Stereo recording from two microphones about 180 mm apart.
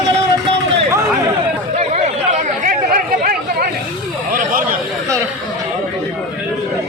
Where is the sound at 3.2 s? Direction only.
55° right (ahead or behind).